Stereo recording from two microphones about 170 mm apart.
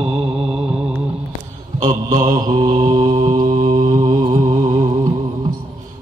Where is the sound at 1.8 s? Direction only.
20° right (ahead or behind).